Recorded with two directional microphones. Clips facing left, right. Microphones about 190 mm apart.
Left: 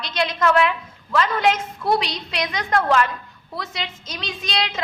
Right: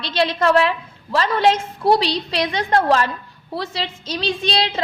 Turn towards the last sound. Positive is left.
turn(degrees=-30)  # may be behind; listen again after turning